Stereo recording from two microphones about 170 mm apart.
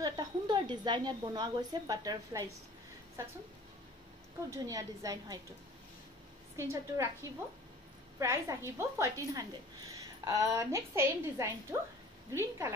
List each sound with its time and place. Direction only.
0.0 s a woman's voice: 25° right (ahead or behind)
4.5 s a woman's voice: 20° right (ahead or behind)
6.5 s a woman's voice: 15° right (ahead or behind)
8.2 s a woman's voice: 15° right (ahead or behind)